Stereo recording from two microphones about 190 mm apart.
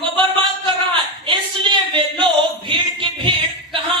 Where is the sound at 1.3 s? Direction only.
25° right (ahead or behind).